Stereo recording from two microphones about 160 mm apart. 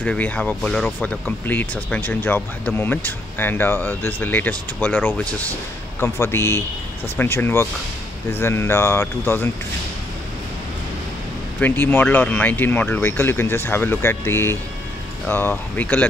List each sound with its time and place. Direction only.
0.0 s speech: 10° left (ahead or behind)
11.6 s speech: 10° left (ahead or behind)